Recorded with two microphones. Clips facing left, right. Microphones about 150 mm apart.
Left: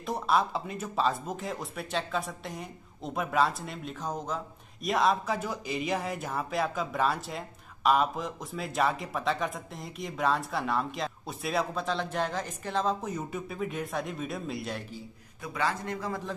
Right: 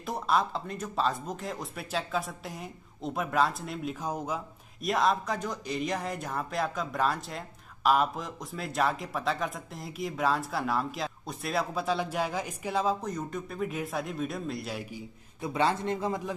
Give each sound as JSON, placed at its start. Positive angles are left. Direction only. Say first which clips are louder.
{"t": 0.0, "sound": "speech", "louder": "left 1 dB", "side_deg": 0}
{"t": 13.0, "sound": "speech", "louder": "even", "side_deg": 5}
{"t": 15.4, "sound": "speech", "louder": "right 4 dB", "side_deg": -25}